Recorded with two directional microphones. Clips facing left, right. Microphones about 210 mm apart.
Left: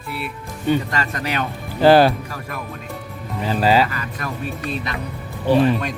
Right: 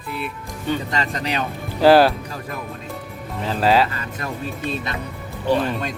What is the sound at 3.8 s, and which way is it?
Speech, 25° right (ahead or behind).